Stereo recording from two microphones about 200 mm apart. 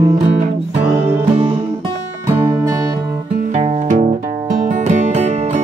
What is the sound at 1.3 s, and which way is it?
Music, 25° right (ahead or behind).